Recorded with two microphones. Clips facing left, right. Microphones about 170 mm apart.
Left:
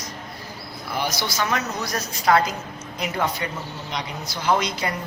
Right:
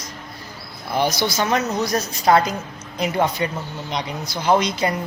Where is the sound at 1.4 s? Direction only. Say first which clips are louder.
Right 4 dB; 25° right (ahead or behind).